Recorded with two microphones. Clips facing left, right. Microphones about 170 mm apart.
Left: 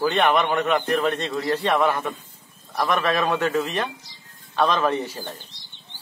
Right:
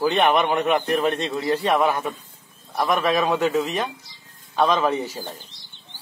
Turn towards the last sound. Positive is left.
turn(degrees=-10)  # may be behind; listen again after turning